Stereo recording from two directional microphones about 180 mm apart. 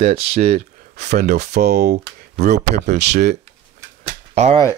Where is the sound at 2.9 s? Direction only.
70° right (ahead or behind).